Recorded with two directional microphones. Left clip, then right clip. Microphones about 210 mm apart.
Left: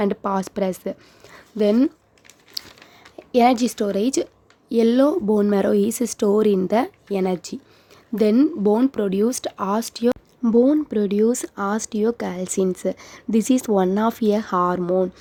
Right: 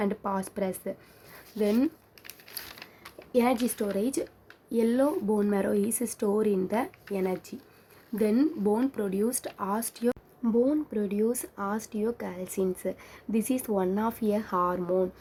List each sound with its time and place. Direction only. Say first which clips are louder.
0.0 s speech: left 8 dB; 40° left (ahead or behind)
3.3 s speech: left 9 dB; 40° left (ahead or behind)
10.4 s speech: left 9 dB; 30° left (ahead or behind)